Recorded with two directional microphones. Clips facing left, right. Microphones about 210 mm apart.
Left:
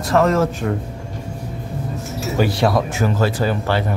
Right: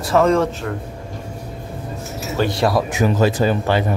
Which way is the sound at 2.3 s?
Centre (ahead or behind).